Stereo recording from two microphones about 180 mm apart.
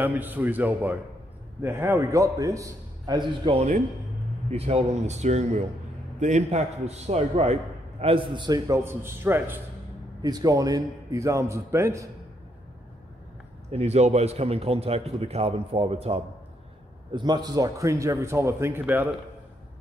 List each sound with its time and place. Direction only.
0.0 s a man's voice: 10° right (ahead or behind)
13.7 s a man's voice: 35° right (ahead or behind); by 19.0 s 10° right (ahead or behind)